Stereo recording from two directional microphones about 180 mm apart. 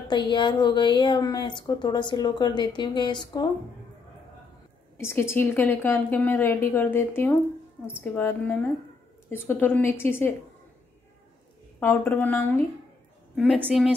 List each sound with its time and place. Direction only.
0.1 s a woman's voice: 25° left (ahead or behind)
4.9 s a woman's voice: 15° left (ahead or behind)
11.8 s a woman's voice: 10° left (ahead or behind)
13.7 s a woman's voice: centre (ahead or behind)